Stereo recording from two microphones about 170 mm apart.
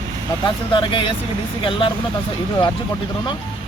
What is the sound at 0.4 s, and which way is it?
Speech, 30° left (ahead or behind).